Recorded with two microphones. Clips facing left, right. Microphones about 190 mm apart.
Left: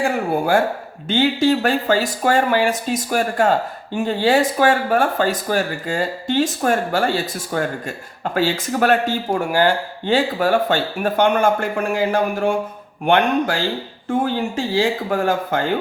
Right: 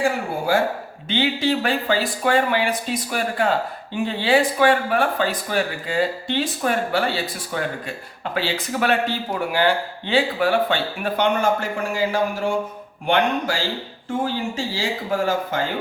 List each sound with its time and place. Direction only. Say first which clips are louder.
0.0 s speech: left 3 dB; 55° left (ahead or behind)